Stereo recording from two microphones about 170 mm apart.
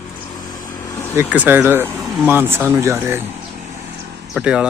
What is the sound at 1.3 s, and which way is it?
Speech, 10° right (ahead or behind).